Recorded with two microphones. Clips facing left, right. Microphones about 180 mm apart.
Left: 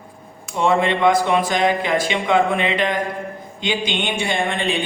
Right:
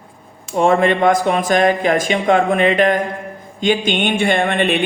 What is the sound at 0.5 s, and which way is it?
A woman's voice, 50° right (ahead or behind).